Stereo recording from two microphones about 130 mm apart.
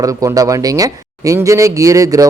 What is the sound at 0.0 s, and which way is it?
Speech, 25° right (ahead or behind).